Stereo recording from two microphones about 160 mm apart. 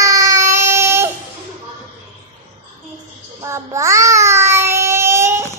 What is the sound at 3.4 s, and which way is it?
Child singing, 15° right (ahead or behind).